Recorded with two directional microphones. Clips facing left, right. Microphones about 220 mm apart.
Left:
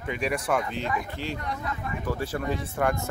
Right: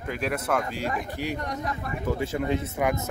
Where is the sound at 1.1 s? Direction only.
15° right (ahead or behind).